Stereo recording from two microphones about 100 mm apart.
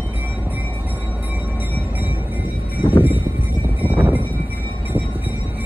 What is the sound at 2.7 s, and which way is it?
Vehicle, 20° right (ahead or behind).